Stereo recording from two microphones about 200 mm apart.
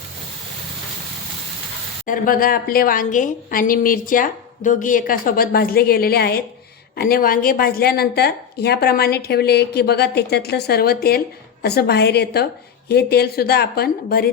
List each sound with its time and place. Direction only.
2.0 s a woman's voice: 45° left (ahead or behind)